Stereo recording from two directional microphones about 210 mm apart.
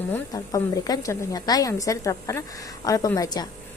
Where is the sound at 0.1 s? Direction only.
15° left (ahead or behind).